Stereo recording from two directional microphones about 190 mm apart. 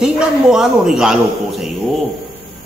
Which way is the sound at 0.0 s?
5° right (ahead or behind).